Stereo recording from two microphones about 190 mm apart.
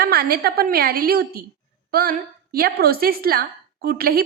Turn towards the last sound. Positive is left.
turn(degrees=-55)  # may be behind; listen again after turning